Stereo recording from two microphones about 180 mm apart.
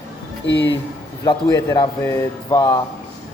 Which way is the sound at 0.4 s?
75° left (ahead or behind).